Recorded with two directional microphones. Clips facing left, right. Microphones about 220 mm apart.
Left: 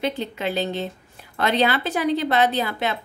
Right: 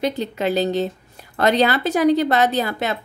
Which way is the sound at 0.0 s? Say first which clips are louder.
Right 4 dB; 40° right (ahead or behind).